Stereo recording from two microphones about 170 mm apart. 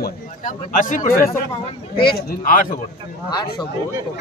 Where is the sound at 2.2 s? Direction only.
60° left (ahead or behind).